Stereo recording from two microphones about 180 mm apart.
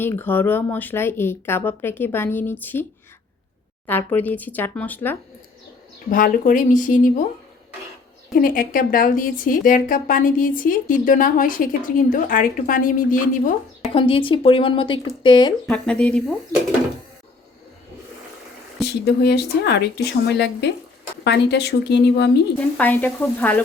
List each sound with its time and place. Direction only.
0.0 s speech: 10° left (ahead or behind)
3.8 s speech: 10° left (ahead or behind)
6.1 s a woman's voice: 50° left (ahead or behind)
8.4 s a woman's voice: 50° left (ahead or behind)
13.9 s a woman's voice: 30° left (ahead or behind)
15.6 s speech: 5° left (ahead or behind)
19.0 s speech: 65° left (ahead or behind)
22.8 s speech: 10° left (ahead or behind)